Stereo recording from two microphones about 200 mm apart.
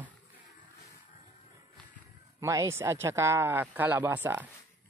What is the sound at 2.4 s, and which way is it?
Speech, 15° right (ahead or behind).